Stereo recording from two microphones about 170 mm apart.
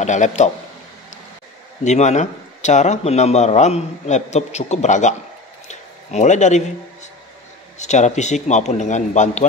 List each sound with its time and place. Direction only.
0.0 s a man's voice: 45° left (ahead or behind)
1.9 s speech: 45° left (ahead or behind)
5.7 s a sound: 45° left (ahead or behind)
7.8 s a man's voice: 45° left (ahead or behind)